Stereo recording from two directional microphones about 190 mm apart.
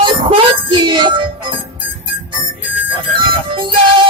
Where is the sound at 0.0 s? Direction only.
25° right (ahead or behind).